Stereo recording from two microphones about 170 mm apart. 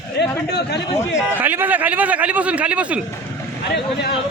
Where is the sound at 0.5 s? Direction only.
80° left.